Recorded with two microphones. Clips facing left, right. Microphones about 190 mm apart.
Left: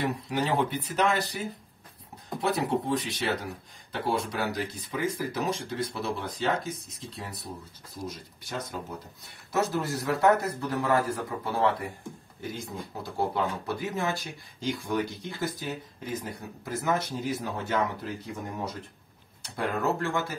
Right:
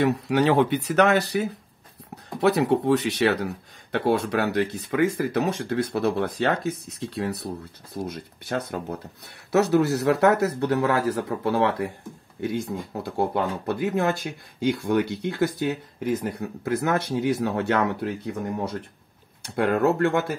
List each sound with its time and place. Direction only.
0.0 s speech: 75° right (ahead or behind)
9.5 s speech: 70° right (ahead or behind)